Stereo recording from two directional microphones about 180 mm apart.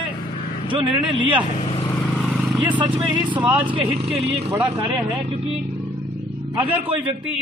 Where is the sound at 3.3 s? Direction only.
10° right (ahead or behind).